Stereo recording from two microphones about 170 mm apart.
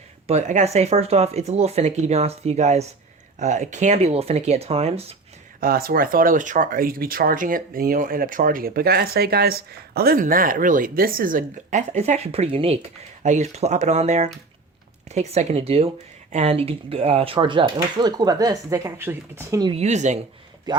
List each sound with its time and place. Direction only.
0.3 s speech: 40° right (ahead or behind)
5.5 s speech: 60° right (ahead or behind); by 19.7 s 20° right (ahead or behind)
19.7 s speech: 40° right (ahead or behind)
20.7 s speech: 25° right (ahead or behind)